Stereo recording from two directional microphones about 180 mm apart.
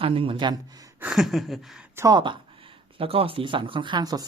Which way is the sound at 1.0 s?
Centre (ahead or behind).